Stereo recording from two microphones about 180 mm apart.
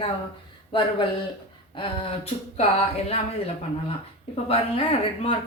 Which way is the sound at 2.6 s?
35° left (ahead or behind).